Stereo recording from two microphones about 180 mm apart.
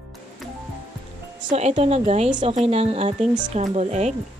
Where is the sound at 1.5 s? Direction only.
40° right (ahead or behind).